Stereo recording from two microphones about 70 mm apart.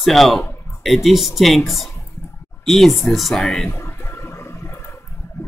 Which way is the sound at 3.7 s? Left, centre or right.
Left.